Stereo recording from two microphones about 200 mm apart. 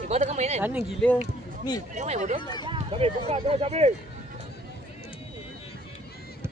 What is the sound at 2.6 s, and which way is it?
Speech, 30° right (ahead or behind).